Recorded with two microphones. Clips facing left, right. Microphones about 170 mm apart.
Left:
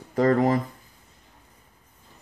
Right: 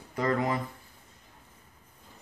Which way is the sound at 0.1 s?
40° left (ahead or behind).